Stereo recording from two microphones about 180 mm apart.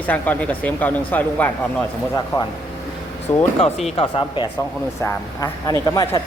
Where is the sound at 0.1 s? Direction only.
10° left (ahead or behind).